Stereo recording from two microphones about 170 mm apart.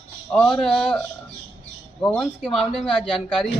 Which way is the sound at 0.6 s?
5° left (ahead or behind).